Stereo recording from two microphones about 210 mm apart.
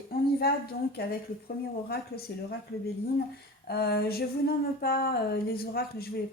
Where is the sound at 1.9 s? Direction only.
45° left (ahead or behind).